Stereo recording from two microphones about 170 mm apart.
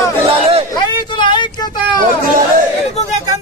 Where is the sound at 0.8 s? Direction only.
25° left (ahead or behind).